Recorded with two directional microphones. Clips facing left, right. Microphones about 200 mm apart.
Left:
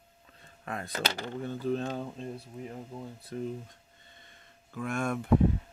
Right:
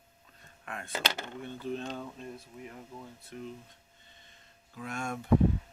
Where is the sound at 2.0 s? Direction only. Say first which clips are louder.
Left 4 dB; 30° left (ahead or behind).